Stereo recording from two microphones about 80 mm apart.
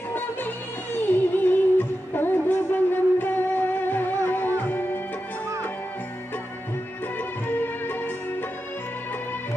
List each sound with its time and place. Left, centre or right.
0.9 s music: left
7.4 s music: left